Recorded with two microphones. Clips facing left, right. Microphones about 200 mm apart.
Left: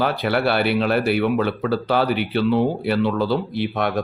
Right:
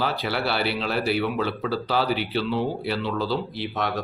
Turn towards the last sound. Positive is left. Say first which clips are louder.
# left 5 dB
turn(degrees=55)  # may be behind; listen again after turning